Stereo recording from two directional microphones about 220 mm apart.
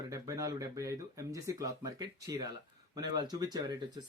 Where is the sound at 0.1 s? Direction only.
15° right (ahead or behind).